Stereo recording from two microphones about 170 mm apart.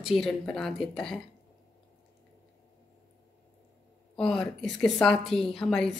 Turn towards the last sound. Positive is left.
turn(degrees=5)  # may be behind; listen again after turning